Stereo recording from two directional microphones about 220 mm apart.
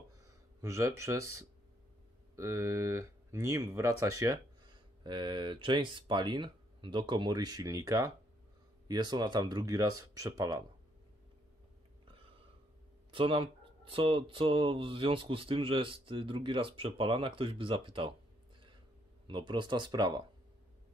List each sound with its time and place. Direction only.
0.6 s speech: 15° right (ahead or behind)
13.1 s speech: 25° right (ahead or behind)
19.2 s speech: 20° right (ahead or behind)